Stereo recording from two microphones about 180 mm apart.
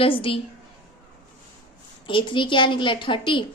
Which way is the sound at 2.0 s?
25° left (ahead or behind).